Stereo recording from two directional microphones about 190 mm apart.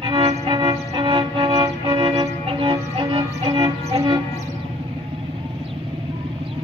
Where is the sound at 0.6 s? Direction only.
20° right (ahead or behind).